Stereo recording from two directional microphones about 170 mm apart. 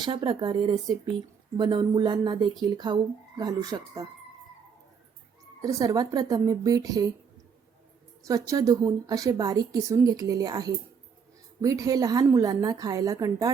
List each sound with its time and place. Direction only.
0.0 s speech: 30° right (ahead or behind)
5.6 s speech: 20° right (ahead or behind)
8.2 s speech: 20° right (ahead or behind)